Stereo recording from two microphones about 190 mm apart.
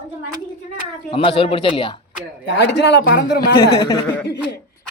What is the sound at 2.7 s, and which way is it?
Speech, 65° left (ahead or behind).